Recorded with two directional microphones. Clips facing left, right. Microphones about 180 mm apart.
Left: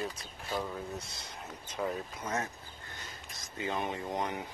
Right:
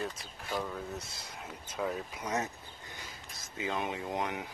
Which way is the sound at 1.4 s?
5° right (ahead or behind).